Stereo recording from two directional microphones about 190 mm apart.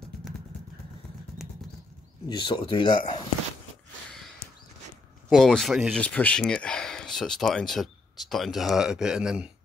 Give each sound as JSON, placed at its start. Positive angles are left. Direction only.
{"t": 2.2, "sound": "speech", "side_deg": 25}
{"t": 5.3, "sound": "speech", "side_deg": 0}